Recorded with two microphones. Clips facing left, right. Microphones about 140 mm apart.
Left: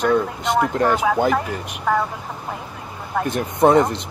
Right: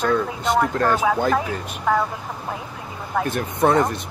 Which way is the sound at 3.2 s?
20° left (ahead or behind).